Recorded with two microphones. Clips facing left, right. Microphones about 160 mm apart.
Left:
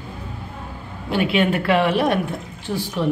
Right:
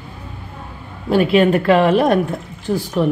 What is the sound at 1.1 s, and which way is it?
A woman's voice, 40° right (ahead or behind).